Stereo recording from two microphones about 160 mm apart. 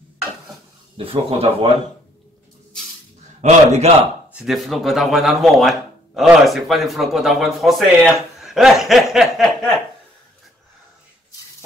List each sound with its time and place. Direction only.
0.9 s speech: 35° right (ahead or behind)
3.3 s a man's voice: 45° right (ahead or behind)
4.3 s speech: 5° right (ahead or behind)